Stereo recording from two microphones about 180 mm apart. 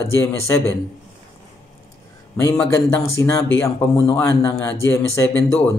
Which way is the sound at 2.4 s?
15° left (ahead or behind).